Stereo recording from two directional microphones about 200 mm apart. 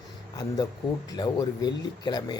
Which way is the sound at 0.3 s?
20° left (ahead or behind).